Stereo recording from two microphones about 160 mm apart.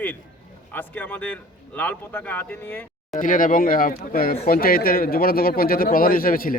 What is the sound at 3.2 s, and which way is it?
A man's voice, 60° left (ahead or behind).